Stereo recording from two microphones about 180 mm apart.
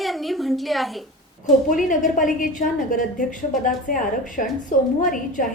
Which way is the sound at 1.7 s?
45° left (ahead or behind).